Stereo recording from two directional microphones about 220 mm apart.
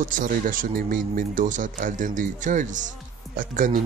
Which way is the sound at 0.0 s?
35° right (ahead or behind).